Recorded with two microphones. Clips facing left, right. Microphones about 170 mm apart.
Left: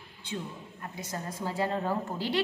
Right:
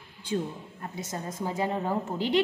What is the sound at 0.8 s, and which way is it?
A woman's voice, 25° right (ahead or behind).